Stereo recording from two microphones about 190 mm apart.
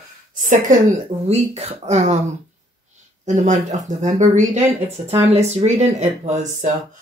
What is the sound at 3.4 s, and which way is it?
Speech, 40° right (ahead or behind).